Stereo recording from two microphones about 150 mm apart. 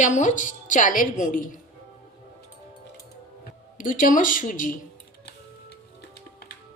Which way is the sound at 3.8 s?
60° left (ahead or behind).